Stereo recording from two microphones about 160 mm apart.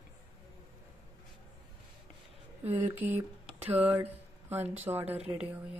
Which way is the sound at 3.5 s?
40° right (ahead or behind).